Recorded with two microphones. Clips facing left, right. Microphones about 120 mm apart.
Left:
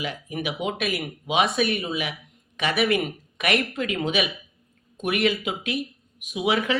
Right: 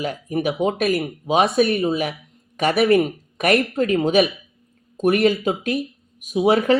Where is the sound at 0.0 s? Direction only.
40° right (ahead or behind).